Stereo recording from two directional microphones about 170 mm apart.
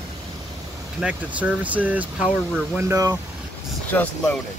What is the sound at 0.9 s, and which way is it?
Speech, 10° right (ahead or behind).